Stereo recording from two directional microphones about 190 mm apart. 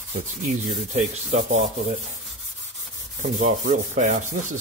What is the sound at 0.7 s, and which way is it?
Rub, 40° right (ahead or behind).